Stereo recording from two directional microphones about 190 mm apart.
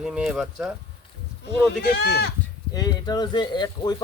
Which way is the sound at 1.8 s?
60° left (ahead or behind).